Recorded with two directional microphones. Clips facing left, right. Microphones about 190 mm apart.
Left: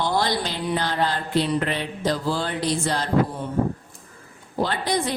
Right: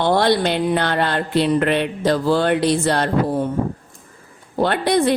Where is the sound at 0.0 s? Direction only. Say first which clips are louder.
Right 7 dB; 60° right (ahead or behind).